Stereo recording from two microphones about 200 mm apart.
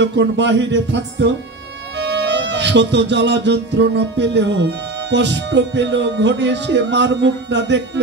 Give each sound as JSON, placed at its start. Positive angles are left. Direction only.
{"t": 0.0, "sound": "music", "side_deg": -65}